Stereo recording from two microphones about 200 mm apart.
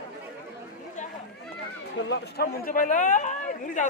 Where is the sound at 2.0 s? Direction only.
65° left (ahead or behind); by 3.9 s 40° left (ahead or behind).